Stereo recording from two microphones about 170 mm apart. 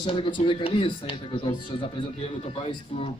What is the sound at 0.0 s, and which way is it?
A man's voice, 30° left (ahead or behind).